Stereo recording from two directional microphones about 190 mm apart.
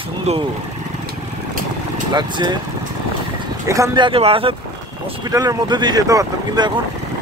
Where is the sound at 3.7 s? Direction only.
20° right (ahead or behind).